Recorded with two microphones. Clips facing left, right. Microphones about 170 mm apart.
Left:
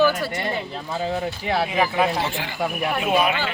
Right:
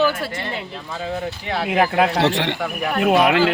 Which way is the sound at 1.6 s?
70° right (ahead or behind).